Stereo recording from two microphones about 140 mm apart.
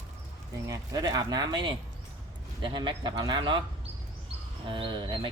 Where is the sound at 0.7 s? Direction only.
25° right (ahead or behind).